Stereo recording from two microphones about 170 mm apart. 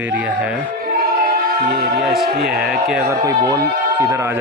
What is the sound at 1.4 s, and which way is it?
Music, 65° right (ahead or behind).